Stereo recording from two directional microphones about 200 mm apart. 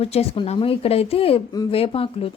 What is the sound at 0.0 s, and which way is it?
Speech, 30° left (ahead or behind).